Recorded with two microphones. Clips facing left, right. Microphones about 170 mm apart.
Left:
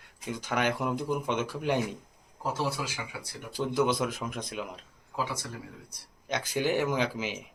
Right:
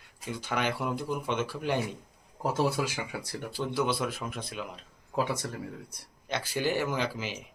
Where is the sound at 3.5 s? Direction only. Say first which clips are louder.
Left 3 dB; 15° left (ahead or behind).